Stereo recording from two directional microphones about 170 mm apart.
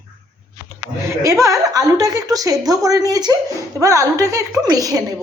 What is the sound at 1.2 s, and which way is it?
A woman's voice, 20° right (ahead or behind).